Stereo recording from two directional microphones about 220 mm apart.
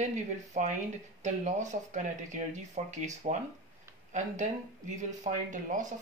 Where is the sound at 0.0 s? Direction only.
35° right (ahead or behind).